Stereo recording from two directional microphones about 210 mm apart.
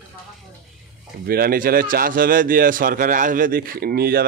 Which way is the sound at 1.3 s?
45° right (ahead or behind).